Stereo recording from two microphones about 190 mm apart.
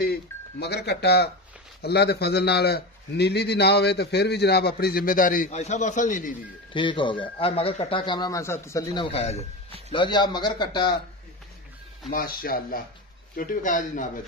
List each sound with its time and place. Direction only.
0.0 s a man's voice: 55° left (ahead or behind)
6.7 s speech: 25° left (ahead or behind)
9.1 s speech: 35° left (ahead or behind)
12.1 s speech: 50° left (ahead or behind)